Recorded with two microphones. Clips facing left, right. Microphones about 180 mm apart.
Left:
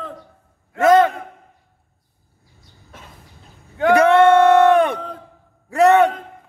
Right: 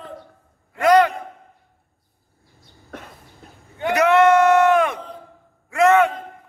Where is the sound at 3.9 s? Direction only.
30° left (ahead or behind).